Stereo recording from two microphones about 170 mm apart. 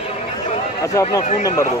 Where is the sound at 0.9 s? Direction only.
20° left (ahead or behind).